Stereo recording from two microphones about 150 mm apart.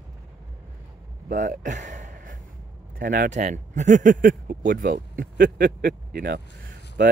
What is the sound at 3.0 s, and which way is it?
Speech, 70° right (ahead or behind).